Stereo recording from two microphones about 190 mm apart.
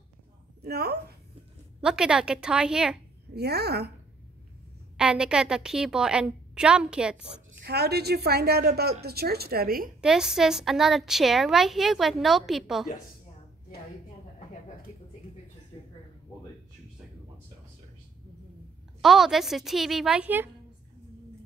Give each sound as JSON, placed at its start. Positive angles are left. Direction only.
{"t": 0.6, "sound": "a woman's voice", "side_deg": -55}
{"t": 1.8, "sound": "a woman's voice", "side_deg": -5}
{"t": 3.3, "sound": "a woman's voice", "side_deg": -60}
{"t": 4.9, "sound": "a woman's voice", "side_deg": -5}
{"t": 7.6, "sound": "a woman's voice", "side_deg": -60}
{"t": 10.0, "sound": "a woman's voice", "side_deg": -5}
{"t": 14.9, "sound": "a sound", "side_deg": -10}
{"t": 15.7, "sound": "a sound", "side_deg": 25}
{"t": 18.9, "sound": "a woman's voice", "side_deg": 0}